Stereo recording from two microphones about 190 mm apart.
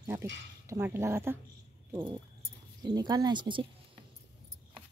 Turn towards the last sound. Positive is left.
turn(degrees=-25)  # may be behind; listen again after turning